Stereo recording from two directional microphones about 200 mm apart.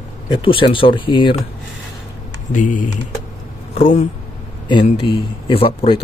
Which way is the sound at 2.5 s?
40° left (ahead or behind).